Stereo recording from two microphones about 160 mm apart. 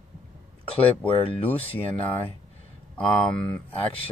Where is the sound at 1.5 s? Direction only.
10° left (ahead or behind).